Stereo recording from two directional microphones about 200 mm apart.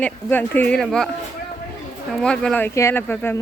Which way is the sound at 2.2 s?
5° left (ahead or behind).